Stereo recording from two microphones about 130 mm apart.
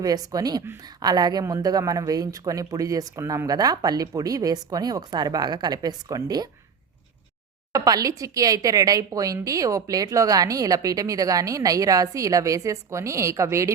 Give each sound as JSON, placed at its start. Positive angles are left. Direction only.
{"t": 0.0, "sound": "speech", "side_deg": -30}
{"t": 7.7, "sound": "speech", "side_deg": -30}